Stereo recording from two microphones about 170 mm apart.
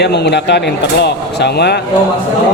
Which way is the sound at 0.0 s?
75° left (ahead or behind).